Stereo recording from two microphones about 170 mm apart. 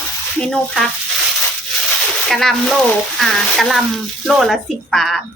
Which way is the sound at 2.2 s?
Centre (ahead or behind).